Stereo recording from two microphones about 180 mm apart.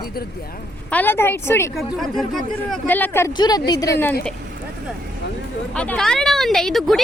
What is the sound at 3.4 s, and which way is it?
Speech, 20° left (ahead or behind).